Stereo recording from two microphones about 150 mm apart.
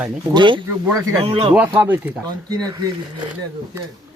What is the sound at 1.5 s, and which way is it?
Speech, 10° right (ahead or behind).